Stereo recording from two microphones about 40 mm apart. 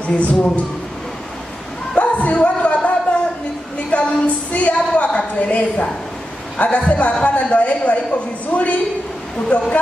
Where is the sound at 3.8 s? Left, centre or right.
Left.